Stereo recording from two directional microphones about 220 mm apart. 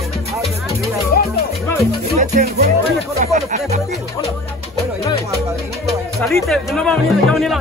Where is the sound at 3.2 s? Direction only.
30° right (ahead or behind).